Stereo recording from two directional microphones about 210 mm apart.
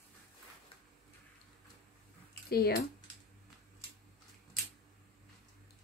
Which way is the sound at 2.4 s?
45° left (ahead or behind).